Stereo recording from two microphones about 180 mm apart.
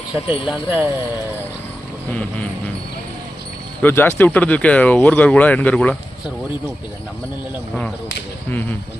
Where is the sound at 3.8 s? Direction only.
10° left (ahead or behind).